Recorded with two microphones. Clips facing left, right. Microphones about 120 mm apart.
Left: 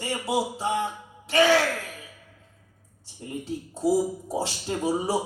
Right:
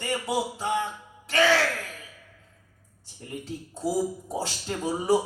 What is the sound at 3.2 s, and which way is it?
Speech, 25° left (ahead or behind).